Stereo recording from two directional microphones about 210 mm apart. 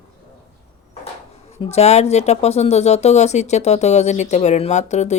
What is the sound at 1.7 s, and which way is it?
Speech, 30° left (ahead or behind).